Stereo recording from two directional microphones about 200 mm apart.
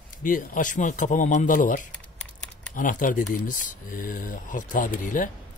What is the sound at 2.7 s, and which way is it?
A man's voice, 40° left (ahead or behind).